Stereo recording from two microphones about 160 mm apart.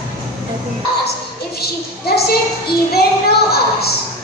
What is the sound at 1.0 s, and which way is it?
A woman's voice, 75° left (ahead or behind).